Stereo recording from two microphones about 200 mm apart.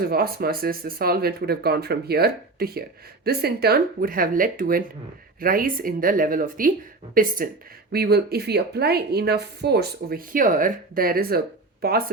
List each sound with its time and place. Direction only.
0.0 s a woman's voice: 50° right (ahead or behind)